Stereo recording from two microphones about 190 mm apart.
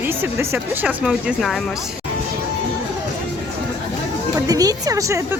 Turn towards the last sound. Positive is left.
turn(degrees=-15)  # may be behind; listen again after turning